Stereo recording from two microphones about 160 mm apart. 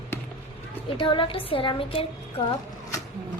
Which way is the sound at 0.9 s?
30° left (ahead or behind).